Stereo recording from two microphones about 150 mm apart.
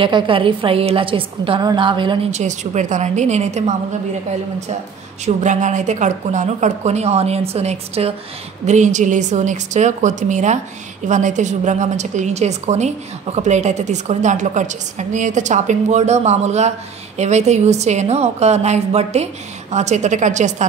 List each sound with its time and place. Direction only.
0.0 s a woman's voice: 35° right (ahead or behind)
2.3 s a woman's voice: 50° right (ahead or behind)
5.2 s a woman's voice: 55° right (ahead or behind)
8.6 s a woman's voice: 55° right (ahead or behind)